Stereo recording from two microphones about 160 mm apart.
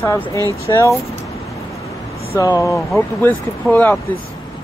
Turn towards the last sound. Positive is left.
turn(degrees=10)  # may be behind; listen again after turning